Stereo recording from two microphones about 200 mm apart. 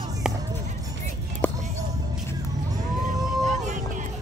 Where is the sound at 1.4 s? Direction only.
10° left (ahead or behind).